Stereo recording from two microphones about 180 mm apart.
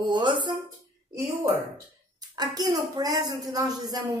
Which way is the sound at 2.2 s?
20° right (ahead or behind).